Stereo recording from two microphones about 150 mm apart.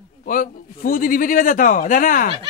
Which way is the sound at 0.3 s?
70° left (ahead or behind).